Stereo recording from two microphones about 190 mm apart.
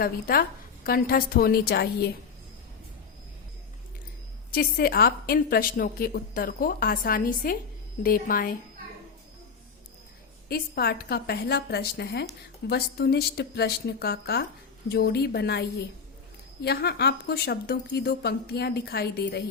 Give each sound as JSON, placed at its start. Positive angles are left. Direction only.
{"t": 0.0, "sound": "a woman's voice", "side_deg": 50}
{"t": 4.5, "sound": "a woman's voice", "side_deg": 50}
{"t": 10.5, "sound": "a woman's voice", "side_deg": 55}
{"t": 16.6, "sound": "a woman's voice", "side_deg": 60}